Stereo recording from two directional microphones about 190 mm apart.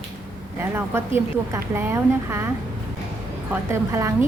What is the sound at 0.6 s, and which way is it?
A woman's voice, 10° right (ahead or behind).